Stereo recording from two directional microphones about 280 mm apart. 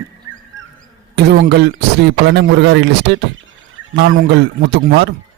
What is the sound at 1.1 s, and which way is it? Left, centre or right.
Speech, right.